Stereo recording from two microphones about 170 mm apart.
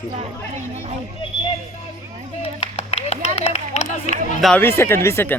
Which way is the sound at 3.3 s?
40° left (ahead or behind).